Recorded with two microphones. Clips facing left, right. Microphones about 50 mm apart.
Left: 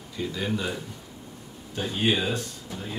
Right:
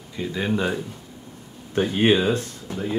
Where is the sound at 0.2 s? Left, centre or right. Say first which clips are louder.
Right 5 dB; right.